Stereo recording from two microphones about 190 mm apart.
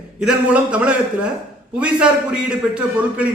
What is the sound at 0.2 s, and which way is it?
A man's voice, 5° right (ahead or behind).